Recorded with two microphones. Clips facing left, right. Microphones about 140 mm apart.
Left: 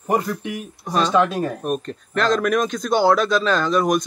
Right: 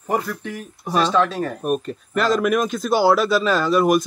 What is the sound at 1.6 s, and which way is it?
Speech, 5° right (ahead or behind).